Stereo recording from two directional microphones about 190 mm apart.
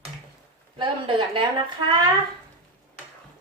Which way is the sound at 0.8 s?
25° right (ahead or behind).